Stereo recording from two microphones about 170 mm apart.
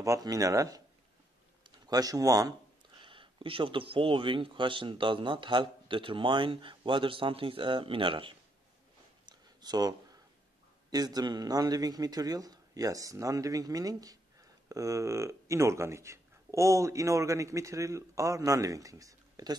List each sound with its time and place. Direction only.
0.0 s a man's voice: 20° right (ahead or behind)
9.2 s a sound: 25° right (ahead or behind)
10.9 s a man's voice: 25° right (ahead or behind)